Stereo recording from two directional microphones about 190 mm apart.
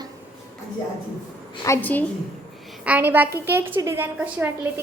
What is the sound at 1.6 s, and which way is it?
Speech, 15° left (ahead or behind).